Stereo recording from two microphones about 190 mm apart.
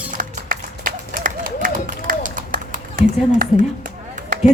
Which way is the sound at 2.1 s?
45° right (ahead or behind).